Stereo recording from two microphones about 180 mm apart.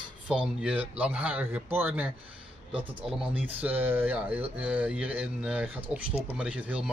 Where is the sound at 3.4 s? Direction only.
10° right (ahead or behind).